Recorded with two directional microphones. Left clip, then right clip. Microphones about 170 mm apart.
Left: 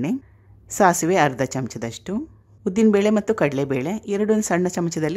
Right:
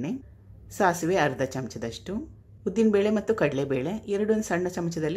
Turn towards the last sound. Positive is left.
turn(degrees=25)  # may be behind; listen again after turning